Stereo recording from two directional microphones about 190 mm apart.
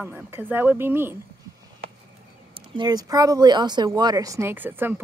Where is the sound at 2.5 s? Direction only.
25° right (ahead or behind).